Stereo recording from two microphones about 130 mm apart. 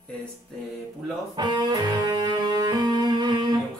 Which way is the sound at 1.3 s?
35° right (ahead or behind).